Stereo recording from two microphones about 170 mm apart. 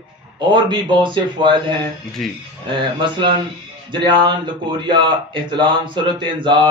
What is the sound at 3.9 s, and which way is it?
A man's voice, 25° right (ahead or behind).